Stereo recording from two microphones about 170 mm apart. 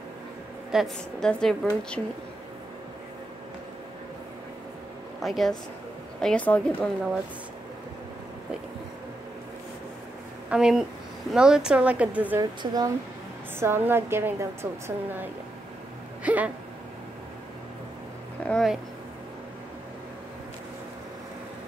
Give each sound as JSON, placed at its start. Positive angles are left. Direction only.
{"t": 0.7, "sound": "a woman's voice", "side_deg": 0}
{"t": 5.2, "sound": "a woman's voice", "side_deg": 0}
{"t": 10.5, "sound": "a woman's voice", "side_deg": -5}
{"t": 12.4, "sound": "a woman's voice", "side_deg": -20}
{"t": 16.3, "sound": "a woman's voice", "side_deg": -10}
{"t": 18.4, "sound": "speech", "side_deg": 5}